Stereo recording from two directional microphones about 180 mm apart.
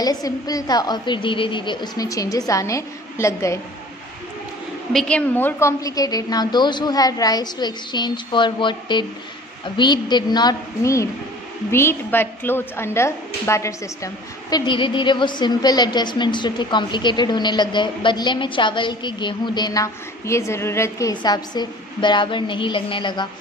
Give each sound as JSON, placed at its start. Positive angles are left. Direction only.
{"t": 0.0, "sound": "a woman's voice", "side_deg": 20}
{"t": 4.9, "sound": "a woman's voice", "side_deg": 5}